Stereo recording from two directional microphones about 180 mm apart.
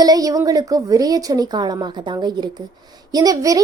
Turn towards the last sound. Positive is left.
turn(degrees=-20)  # may be behind; listen again after turning